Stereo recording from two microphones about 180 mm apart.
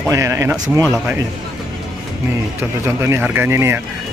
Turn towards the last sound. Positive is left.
turn(degrees=-15)  # may be behind; listen again after turning